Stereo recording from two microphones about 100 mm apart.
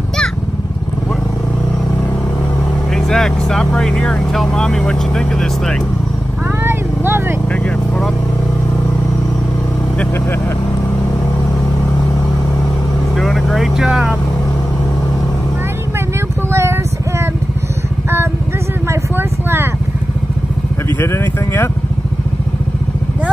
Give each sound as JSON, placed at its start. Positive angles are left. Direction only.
{"t": 3.0, "sound": "speech", "side_deg": 5}
{"t": 6.6, "sound": "vehicle", "side_deg": -20}
{"t": 13.2, "sound": "speech", "side_deg": 5}
{"t": 18.9, "sound": "vehicle", "side_deg": -20}
{"t": 21.0, "sound": "speech", "side_deg": 20}